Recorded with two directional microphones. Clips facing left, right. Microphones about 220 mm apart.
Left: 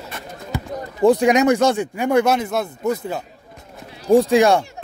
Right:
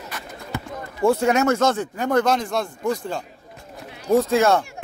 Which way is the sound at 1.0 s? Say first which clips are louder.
Left 4 dB; 15° left (ahead or behind).